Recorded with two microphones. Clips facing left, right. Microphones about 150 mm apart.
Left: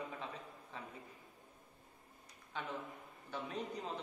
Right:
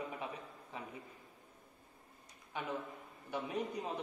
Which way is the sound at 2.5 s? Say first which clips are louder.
Right 3 dB; 15° right (ahead or behind).